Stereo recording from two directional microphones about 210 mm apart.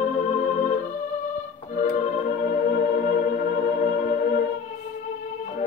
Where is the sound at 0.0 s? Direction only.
35° left (ahead or behind).